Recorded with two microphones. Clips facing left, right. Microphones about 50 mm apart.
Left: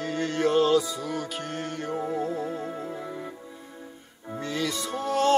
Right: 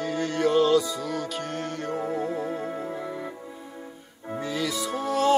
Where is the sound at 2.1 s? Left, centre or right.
Centre.